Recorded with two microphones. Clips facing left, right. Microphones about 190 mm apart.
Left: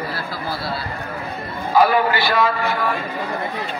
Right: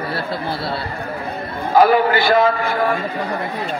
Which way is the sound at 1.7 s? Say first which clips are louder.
Right 3 dB; 50° right (ahead or behind).